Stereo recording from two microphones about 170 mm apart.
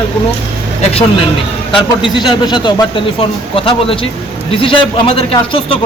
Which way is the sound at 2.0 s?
25° left (ahead or behind).